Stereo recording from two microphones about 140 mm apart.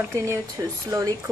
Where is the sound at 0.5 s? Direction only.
25° right (ahead or behind).